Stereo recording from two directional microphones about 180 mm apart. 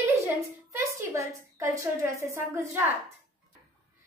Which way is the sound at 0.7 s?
15° right (ahead or behind).